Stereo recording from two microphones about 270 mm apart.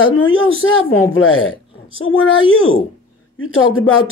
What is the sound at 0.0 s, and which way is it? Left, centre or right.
Speech, left.